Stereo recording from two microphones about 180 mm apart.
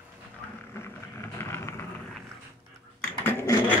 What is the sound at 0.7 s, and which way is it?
Vehicle, 15° left (ahead or behind).